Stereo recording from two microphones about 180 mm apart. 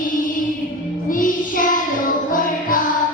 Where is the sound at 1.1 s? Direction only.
50° left (ahead or behind).